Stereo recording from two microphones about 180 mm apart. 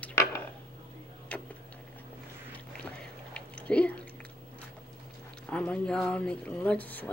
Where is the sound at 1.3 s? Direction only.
5° left (ahead or behind).